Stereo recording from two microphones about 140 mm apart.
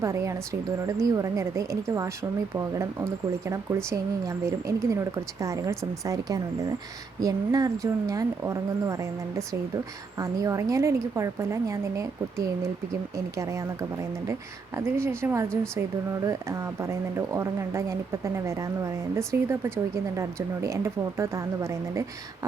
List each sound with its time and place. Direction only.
0.0 s speech: 20° right (ahead or behind)
14.8 s a woman's voice: 20° right (ahead or behind)